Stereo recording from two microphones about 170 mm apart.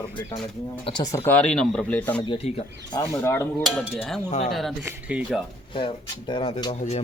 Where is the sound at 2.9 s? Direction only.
20° left (ahead or behind).